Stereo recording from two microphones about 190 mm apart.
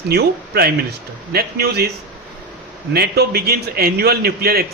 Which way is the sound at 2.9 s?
55° right (ahead or behind).